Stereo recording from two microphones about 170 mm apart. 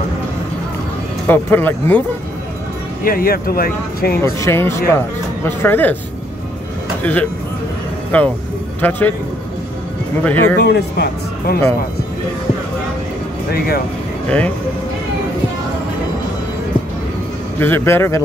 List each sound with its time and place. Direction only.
1.2 s speech: 10° left (ahead or behind)
3.0 s speech: 60° left (ahead or behind)
4.2 s speech: 15° left (ahead or behind)
7.0 s speech: 10° left (ahead or behind)
10.2 s speech: 10° left (ahead or behind)
10.6 s speech: 75° left (ahead or behind)
13.5 s speech: 65° left (ahead or behind)
17.6 s speech: 10° left (ahead or behind)